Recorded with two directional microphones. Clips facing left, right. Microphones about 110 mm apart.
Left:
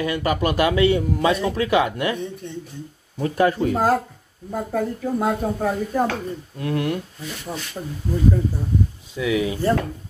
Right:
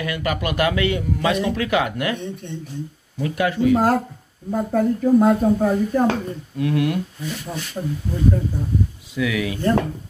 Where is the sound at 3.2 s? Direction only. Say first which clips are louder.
Left 2 dB; 35° left (ahead or behind).